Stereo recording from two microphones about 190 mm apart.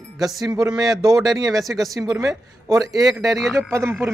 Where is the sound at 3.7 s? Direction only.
15° right (ahead or behind).